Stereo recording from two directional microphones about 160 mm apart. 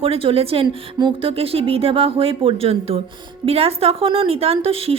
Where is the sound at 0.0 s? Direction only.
35° right (ahead or behind).